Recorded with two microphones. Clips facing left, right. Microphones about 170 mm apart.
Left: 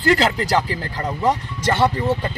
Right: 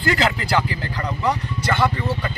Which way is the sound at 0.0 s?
35° left (ahead or behind).